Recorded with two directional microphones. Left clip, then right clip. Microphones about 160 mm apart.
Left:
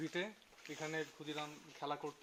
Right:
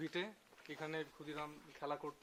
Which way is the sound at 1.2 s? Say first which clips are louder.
Left 2 dB; 65° left (ahead or behind).